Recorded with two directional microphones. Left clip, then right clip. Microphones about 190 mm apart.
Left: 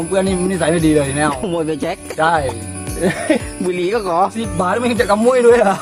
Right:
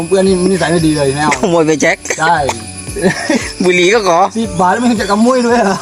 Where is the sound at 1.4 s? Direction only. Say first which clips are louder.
Right 9 dB; 15° right (ahead or behind).